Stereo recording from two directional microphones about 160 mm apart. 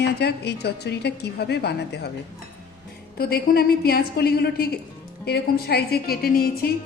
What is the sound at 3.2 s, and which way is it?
A woman's voice, 70° left (ahead or behind).